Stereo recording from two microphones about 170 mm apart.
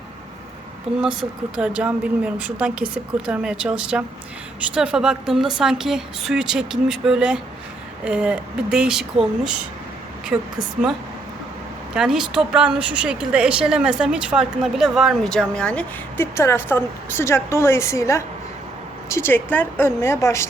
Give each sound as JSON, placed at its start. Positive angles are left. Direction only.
{"t": 1.0, "sound": "a woman's voice", "side_deg": -5}
{"t": 11.9, "sound": "a woman's voice", "side_deg": -5}